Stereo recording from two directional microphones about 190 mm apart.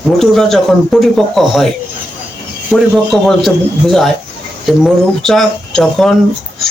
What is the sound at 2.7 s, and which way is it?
A man's voice, centre (ahead or behind).